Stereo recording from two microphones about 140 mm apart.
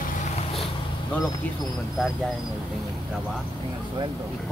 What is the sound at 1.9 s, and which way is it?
Speech, centre (ahead or behind).